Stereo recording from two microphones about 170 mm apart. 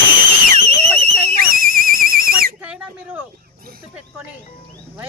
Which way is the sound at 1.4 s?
60° right (ahead or behind).